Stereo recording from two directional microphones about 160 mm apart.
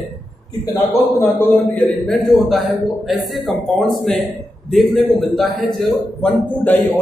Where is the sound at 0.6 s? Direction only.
20° left (ahead or behind).